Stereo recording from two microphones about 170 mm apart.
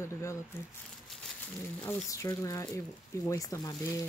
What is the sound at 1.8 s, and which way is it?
Speech, 20° left (ahead or behind).